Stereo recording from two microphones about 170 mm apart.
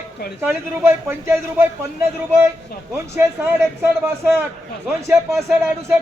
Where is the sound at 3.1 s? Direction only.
15° right (ahead or behind).